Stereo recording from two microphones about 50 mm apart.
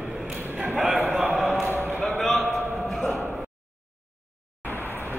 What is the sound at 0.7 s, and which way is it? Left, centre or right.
Speech, centre.